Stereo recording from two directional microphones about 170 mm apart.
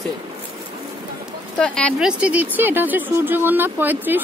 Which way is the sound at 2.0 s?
10° right (ahead or behind).